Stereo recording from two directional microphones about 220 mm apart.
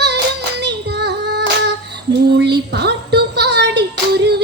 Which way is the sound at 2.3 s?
50° right (ahead or behind).